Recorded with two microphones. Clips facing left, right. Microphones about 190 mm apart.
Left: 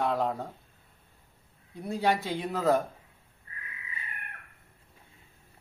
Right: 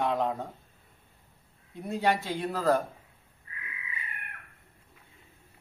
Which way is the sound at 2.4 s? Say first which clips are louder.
Even; 5° left (ahead or behind).